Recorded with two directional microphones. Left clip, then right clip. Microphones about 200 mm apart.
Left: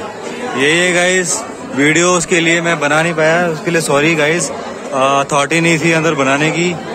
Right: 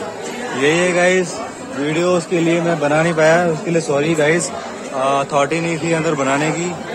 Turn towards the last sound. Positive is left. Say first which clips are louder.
# left 4 dB
turn(degrees=0)  # may be behind; listen again after turning